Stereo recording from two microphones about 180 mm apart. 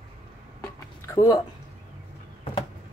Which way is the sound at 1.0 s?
20° left (ahead or behind).